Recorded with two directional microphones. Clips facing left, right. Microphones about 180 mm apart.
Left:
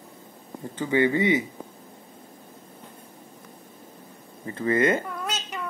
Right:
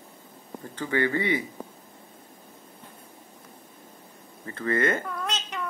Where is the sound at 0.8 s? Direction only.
20° left (ahead or behind).